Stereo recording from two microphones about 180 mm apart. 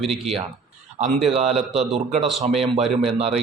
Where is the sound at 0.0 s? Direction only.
Centre (ahead or behind).